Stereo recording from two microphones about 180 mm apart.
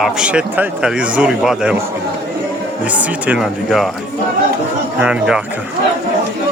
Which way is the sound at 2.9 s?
5° right (ahead or behind).